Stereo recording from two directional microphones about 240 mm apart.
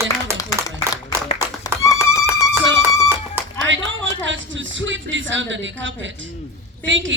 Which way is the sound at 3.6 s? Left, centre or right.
Right.